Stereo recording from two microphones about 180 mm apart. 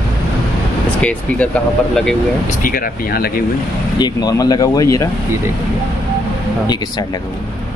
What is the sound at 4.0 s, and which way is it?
Speech, 20° left (ahead or behind).